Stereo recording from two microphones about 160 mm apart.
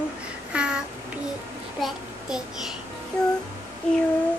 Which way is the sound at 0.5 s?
5° right (ahead or behind).